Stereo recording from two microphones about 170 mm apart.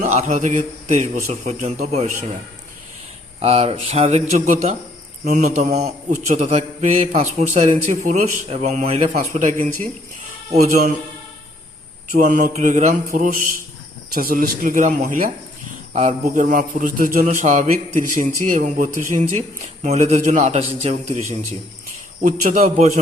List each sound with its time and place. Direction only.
0.0 s a man's voice: 45° right (ahead or behind)
3.4 s a man's voice: 35° right (ahead or behind)
12.1 s a man's voice: 50° right (ahead or behind)
22.2 s a man's voice: 50° right (ahead or behind)